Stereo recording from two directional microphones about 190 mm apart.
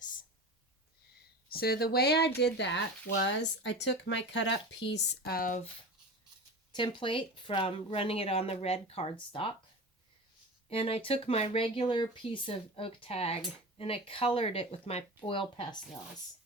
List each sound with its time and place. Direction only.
1.5 s speech: 55° left (ahead or behind)
6.7 s speech: 25° left (ahead or behind)
10.7 s speech: 30° left (ahead or behind)